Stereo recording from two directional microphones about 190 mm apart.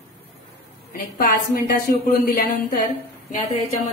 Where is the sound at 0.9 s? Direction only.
50° left (ahead or behind).